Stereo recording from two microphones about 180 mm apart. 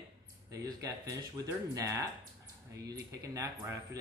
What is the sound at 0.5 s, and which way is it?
Speech, 20° right (ahead or behind).